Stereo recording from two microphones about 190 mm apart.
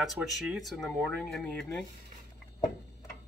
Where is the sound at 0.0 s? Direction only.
Centre (ahead or behind).